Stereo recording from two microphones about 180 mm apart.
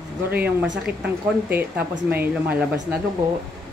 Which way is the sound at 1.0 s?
10° right (ahead or behind).